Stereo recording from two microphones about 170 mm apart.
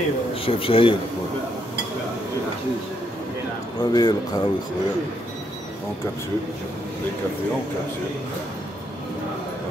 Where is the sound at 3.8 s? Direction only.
25° left (ahead or behind).